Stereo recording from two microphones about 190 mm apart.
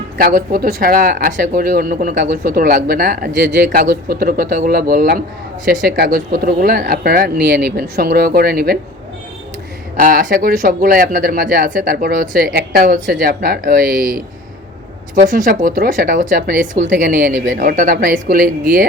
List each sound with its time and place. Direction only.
0.2 s speech: 50° right (ahead or behind)
10.0 s speech: 50° right (ahead or behind)
15.3 s speech: 45° right (ahead or behind)